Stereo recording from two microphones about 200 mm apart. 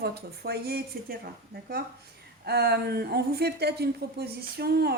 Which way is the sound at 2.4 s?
55° right (ahead or behind).